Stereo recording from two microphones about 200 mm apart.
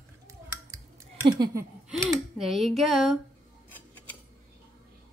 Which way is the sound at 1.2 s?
20° right (ahead or behind).